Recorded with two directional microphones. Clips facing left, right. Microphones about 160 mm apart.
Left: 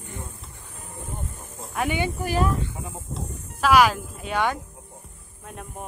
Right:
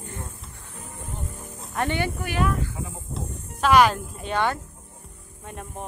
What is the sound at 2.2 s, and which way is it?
Speech, 35° left (ahead or behind).